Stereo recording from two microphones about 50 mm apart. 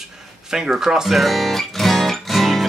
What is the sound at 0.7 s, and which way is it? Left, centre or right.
Speech, centre.